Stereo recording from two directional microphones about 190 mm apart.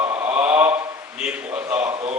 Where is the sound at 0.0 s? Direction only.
10° right (ahead or behind).